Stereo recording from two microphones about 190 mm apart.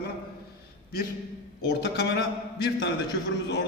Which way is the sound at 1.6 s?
55° left (ahead or behind).